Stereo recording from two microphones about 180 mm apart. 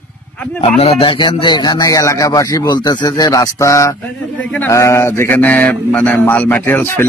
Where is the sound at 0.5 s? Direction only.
35° left (ahead or behind).